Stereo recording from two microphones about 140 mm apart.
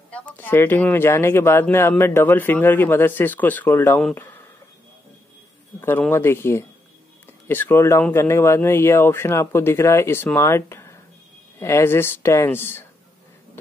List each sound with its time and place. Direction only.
0.1 s speech: 10° left (ahead or behind)
5.8 s speech: 15° left (ahead or behind)